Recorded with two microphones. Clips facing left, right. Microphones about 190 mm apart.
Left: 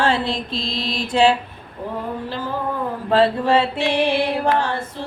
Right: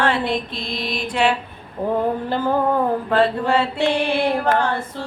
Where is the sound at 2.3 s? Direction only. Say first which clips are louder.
Right 7 dB; 55° right (ahead or behind).